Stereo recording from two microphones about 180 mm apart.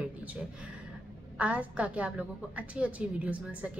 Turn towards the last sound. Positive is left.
turn(degrees=-5)  # may be behind; listen again after turning